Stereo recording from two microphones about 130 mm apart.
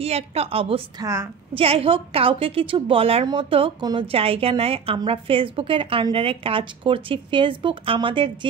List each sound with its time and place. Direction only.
0.0 s a woman's voice: 50° right (ahead or behind)
1.0 s a woman's voice: 20° right (ahead or behind)
1.5 s a woman's voice: 45° right (ahead or behind)